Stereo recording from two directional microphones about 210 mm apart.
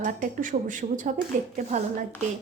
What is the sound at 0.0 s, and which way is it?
Speech, 40° right (ahead or behind).